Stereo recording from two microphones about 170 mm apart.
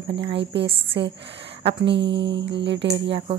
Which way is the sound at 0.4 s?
90° right.